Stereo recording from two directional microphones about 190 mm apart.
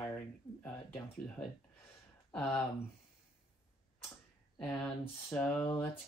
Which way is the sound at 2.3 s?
5° left (ahead or behind).